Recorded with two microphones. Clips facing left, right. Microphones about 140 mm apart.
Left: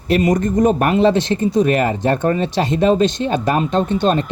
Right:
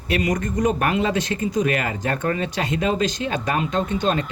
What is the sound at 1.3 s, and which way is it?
Speech, 35° left (ahead or behind).